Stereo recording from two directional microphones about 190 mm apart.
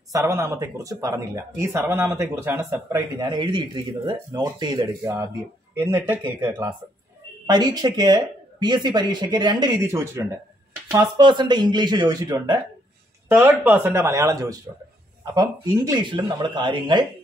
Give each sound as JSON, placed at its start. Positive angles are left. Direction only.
{"t": 0.1, "sound": "speech", "side_deg": -15}